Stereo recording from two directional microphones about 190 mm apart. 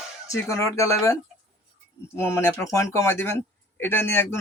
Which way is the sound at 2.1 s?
15° left (ahead or behind).